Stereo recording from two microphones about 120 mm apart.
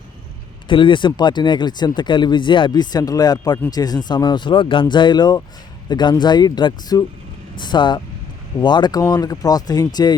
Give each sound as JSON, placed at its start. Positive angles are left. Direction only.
{"t": 0.7, "sound": "speech", "side_deg": 45}